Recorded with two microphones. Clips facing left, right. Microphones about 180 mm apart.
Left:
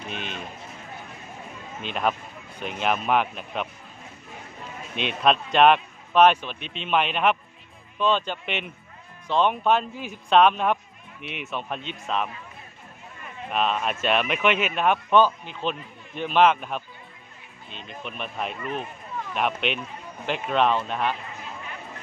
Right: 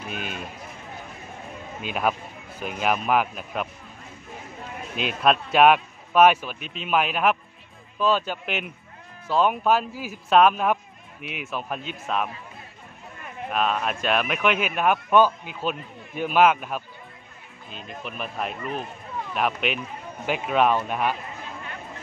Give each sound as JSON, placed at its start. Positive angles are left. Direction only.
{"t": 0.1, "sound": "run", "side_deg": -5}
{"t": 1.8, "sound": "speech", "side_deg": -5}
{"t": 4.9, "sound": "speech", "side_deg": -5}
{"t": 13.5, "sound": "speech", "side_deg": 0}